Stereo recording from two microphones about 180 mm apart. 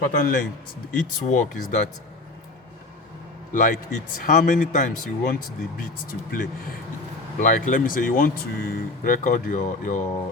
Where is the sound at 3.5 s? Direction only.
45° left (ahead or behind).